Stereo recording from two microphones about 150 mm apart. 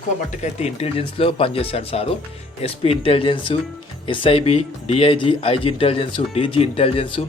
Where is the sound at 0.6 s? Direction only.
40° left (ahead or behind).